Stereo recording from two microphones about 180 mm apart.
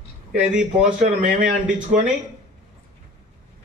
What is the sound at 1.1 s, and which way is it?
Speech, 45° right (ahead or behind).